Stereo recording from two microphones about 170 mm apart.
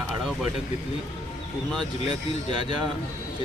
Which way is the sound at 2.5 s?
30° right (ahead or behind).